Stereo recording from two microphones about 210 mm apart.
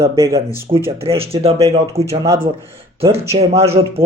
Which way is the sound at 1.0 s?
25° right (ahead or behind).